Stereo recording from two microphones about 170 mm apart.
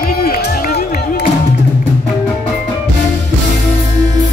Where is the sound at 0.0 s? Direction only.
60° left (ahead or behind).